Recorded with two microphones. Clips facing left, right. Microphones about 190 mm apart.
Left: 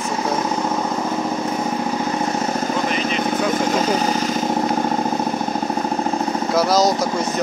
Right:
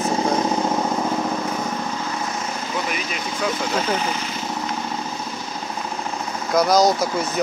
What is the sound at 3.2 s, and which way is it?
Vehicle, 50° left (ahead or behind).